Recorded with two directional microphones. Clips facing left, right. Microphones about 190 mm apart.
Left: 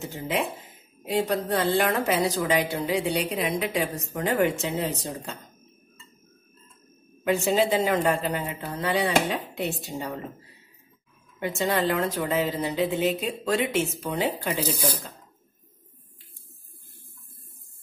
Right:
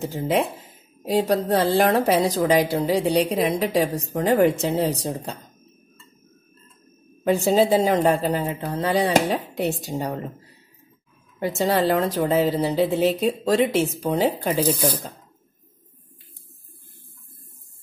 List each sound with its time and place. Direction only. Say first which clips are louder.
0.0 s a woman's voice: right 6 dB; 35° right (ahead or behind)
7.3 s a woman's voice: right 5 dB; 35° right (ahead or behind)
11.3 s a woman's voice: right 4 dB; 35° right (ahead or behind)
14.7 s speech: right 6 dB; 10° right (ahead or behind)